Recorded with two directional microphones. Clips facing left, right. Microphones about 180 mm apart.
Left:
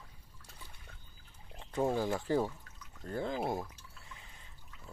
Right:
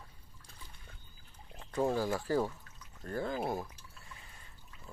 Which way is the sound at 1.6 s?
20° left (ahead or behind).